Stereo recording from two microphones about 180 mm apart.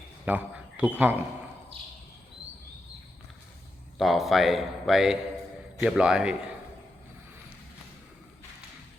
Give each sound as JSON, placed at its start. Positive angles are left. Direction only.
{"t": 0.3, "sound": "speech", "side_deg": -10}
{"t": 1.7, "sound": "a sound", "side_deg": -30}
{"t": 3.9, "sound": "a man's voice", "side_deg": 0}